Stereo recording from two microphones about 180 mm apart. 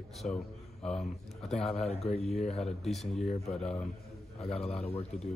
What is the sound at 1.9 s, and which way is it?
Speech, 35° left (ahead or behind).